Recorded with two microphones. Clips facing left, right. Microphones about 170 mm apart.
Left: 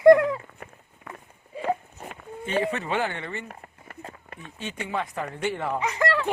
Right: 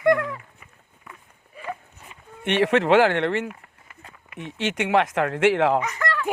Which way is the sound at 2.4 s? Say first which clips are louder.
Right 7 dB; 80° right.